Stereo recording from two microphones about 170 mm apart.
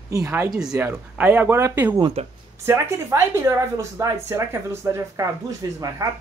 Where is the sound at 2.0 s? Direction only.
30° right (ahead or behind).